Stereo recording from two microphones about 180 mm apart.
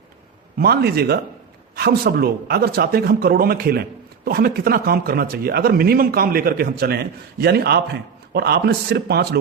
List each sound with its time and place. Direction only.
0.6 s speech: 60° right (ahead or behind)